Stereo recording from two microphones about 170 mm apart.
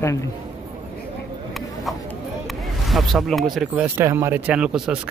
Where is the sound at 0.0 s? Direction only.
20° left (ahead or behind).